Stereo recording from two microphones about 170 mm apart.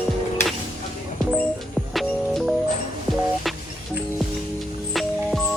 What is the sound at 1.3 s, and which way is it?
Music, centre (ahead or behind).